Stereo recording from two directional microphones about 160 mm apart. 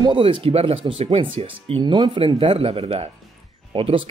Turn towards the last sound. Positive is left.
turn(degrees=-35)  # may be behind; listen again after turning